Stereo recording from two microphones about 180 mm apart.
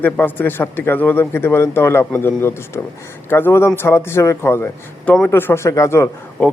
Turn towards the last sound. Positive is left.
turn(degrees=15)  # may be behind; listen again after turning